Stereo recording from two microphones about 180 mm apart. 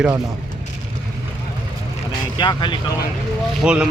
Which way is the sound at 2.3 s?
25° left (ahead or behind).